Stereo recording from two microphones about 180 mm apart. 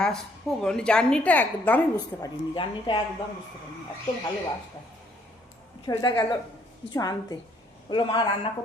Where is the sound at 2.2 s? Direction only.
25° left (ahead or behind).